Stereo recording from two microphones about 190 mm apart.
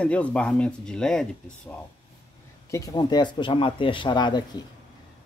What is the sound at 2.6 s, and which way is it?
Speech, 15° left (ahead or behind).